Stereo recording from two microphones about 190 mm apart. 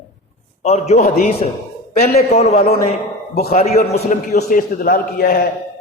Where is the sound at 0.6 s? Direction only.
35° left (ahead or behind).